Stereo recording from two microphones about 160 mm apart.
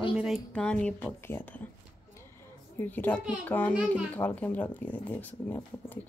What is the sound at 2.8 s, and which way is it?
Speech, 10° left (ahead or behind).